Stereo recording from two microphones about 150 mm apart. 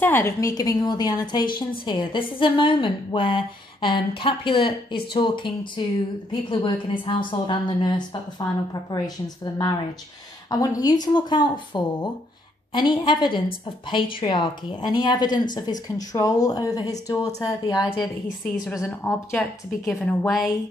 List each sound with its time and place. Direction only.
0.0 s a woman's voice: 15° left (ahead or behind)
18.6 s speech: 5° right (ahead or behind)
18.9 s speech: 10° left (ahead or behind)
19.8 s speech: centre (ahead or behind)